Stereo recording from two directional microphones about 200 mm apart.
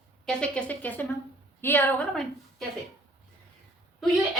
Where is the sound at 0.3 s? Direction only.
5° left (ahead or behind).